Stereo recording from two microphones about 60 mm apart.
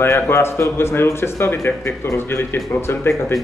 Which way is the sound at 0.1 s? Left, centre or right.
Left.